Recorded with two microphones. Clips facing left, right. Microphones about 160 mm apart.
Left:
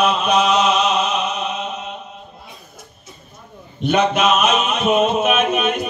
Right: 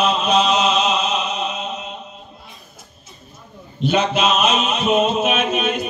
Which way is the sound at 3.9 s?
55° left (ahead or behind).